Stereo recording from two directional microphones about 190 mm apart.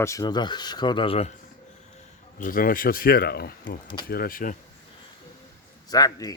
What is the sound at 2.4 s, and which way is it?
Speech, 45° left (ahead or behind).